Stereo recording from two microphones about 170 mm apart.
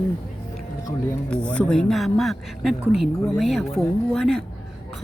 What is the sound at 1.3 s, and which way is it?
A woman's voice, 5° left (ahead or behind).